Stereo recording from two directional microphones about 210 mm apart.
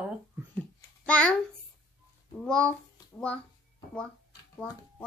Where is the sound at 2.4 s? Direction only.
5° left (ahead or behind).